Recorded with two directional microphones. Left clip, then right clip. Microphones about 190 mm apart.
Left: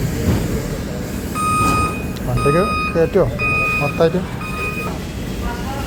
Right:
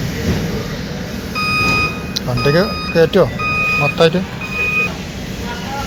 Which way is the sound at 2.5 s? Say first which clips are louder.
Even; centre (ahead or behind).